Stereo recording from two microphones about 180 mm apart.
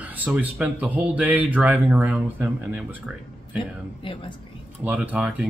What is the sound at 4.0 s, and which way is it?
Speech, 30° left (ahead or behind).